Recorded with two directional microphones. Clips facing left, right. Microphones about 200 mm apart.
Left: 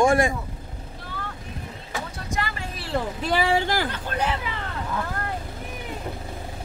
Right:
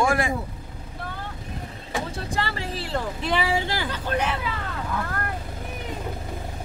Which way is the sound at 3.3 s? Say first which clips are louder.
Left 3 dB; 45° left (ahead or behind).